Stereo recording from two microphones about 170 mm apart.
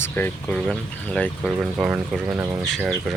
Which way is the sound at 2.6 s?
Centre (ahead or behind).